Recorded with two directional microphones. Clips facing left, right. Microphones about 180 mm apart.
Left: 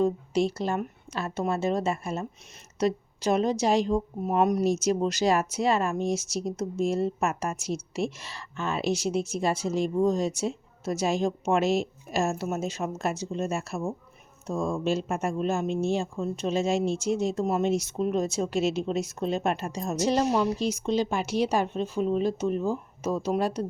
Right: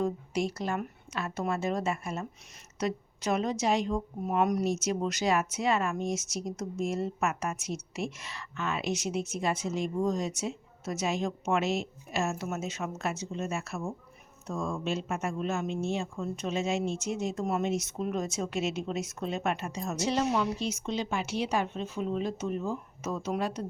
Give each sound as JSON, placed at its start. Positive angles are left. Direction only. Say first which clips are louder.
{"t": 0.0, "sound": "a woman's voice", "louder": "left 6 dB", "side_deg": 25}